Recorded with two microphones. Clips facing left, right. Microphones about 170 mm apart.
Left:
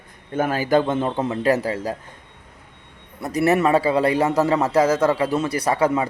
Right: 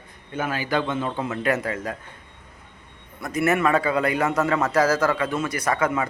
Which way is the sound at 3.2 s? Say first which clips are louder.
Left 3 dB; 35° left (ahead or behind).